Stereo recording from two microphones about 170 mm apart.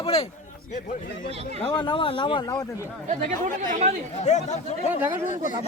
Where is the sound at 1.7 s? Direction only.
25° left (ahead or behind).